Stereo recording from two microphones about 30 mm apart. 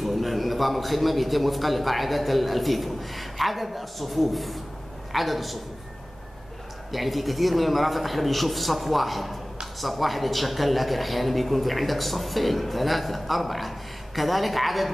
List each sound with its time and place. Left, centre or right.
0.0 s a man's voice: centre
6.9 s a man's voice: centre